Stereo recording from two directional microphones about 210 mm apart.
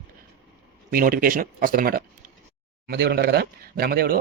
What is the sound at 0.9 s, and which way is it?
Speech, 45° right (ahead or behind).